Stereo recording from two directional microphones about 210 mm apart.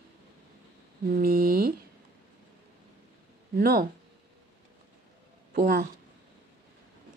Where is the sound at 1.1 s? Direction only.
45° right (ahead or behind).